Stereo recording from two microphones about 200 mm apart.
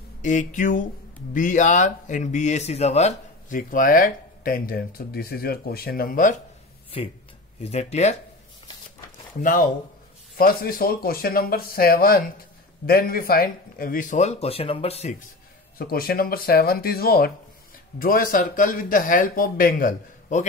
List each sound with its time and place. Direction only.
0.2 s speech: 40° left (ahead or behind)
7.6 s speech: 35° left (ahead or behind)
9.4 s speech: 45° left (ahead or behind)
15.8 s speech: 50° left (ahead or behind)